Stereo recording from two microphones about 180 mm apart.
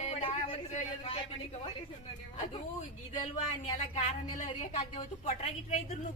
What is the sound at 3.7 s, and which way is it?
A man's voice, 35° left (ahead or behind).